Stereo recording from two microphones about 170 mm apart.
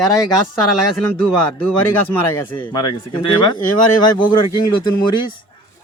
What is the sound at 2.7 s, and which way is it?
Speech, 30° left (ahead or behind).